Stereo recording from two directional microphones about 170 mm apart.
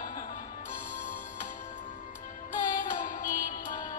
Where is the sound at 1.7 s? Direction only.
50° left (ahead or behind).